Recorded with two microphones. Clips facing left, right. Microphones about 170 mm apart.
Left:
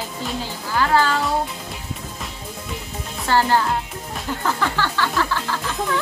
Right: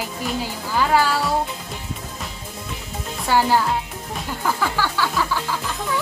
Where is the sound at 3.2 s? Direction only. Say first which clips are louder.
Even; 10° right (ahead or behind).